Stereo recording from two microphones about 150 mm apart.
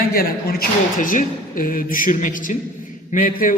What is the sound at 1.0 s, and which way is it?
A man's voice, 65° left (ahead or behind).